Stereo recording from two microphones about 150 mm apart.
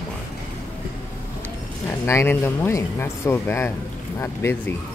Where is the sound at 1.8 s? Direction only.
15° left (ahead or behind).